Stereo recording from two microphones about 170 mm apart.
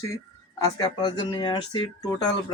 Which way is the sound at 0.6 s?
20° left (ahead or behind).